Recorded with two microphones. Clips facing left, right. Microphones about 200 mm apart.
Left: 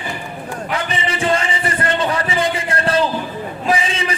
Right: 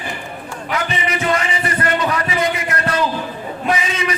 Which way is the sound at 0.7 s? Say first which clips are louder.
Right 2 dB; 30° left (ahead or behind).